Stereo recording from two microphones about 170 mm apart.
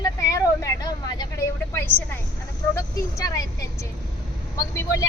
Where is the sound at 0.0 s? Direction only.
20° left (ahead or behind).